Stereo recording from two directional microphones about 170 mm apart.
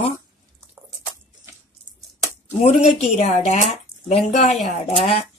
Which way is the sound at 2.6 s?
40° left (ahead or behind).